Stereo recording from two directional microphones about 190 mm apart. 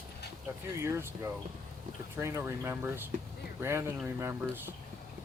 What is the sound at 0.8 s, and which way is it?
Speech, 15° right (ahead or behind).